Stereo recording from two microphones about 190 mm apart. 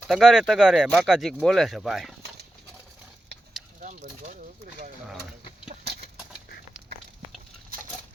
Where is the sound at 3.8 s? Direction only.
40° right (ahead or behind).